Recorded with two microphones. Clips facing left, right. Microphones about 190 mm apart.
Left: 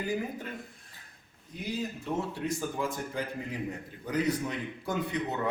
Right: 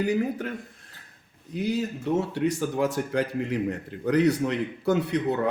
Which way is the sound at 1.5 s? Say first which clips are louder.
Right 8 dB; 75° right (ahead or behind).